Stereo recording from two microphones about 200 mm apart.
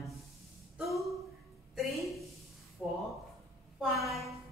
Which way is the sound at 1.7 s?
Centre (ahead or behind).